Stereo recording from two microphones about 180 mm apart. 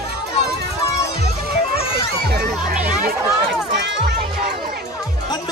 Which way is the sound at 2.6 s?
50° right (ahead or behind).